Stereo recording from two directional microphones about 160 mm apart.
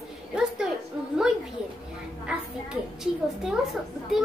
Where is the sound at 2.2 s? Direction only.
5° right (ahead or behind).